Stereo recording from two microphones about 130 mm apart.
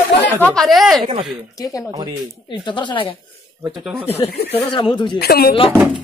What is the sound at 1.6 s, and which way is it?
Speech, 25° left (ahead or behind).